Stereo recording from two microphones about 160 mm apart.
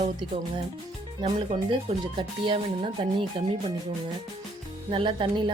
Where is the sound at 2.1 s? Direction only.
30° right (ahead or behind).